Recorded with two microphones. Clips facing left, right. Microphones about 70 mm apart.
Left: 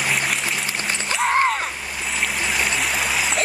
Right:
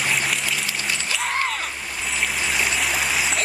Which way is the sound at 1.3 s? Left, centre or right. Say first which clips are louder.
Left 7 dB; left.